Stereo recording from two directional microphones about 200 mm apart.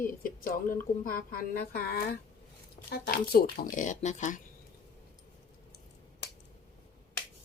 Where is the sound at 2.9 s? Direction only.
50° left (ahead or behind).